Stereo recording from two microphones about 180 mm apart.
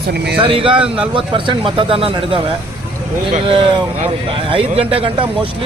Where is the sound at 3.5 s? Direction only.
30° right (ahead or behind).